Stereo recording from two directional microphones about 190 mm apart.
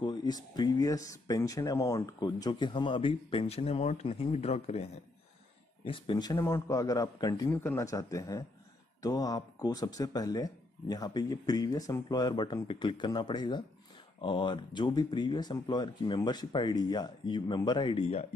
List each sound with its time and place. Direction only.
0.0 s speech: 20° left (ahead or behind)
5.9 s a man's voice: 25° left (ahead or behind)